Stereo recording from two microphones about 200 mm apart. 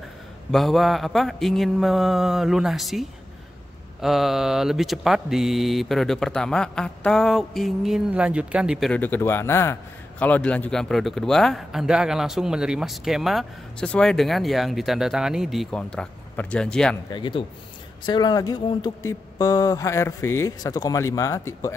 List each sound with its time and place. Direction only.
0.5 s speech: centre (ahead or behind)
17.1 s speech: 25° left (ahead or behind)